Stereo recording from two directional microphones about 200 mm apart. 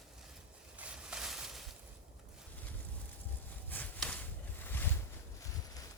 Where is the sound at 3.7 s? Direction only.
5° left (ahead or behind).